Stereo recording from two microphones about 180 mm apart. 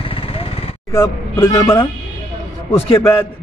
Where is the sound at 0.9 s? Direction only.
15° left (ahead or behind).